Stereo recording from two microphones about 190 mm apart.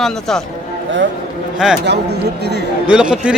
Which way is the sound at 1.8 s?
60° right (ahead or behind).